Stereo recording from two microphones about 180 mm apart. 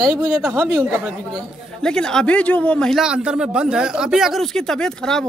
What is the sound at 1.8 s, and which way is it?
Speech, 5° left (ahead or behind).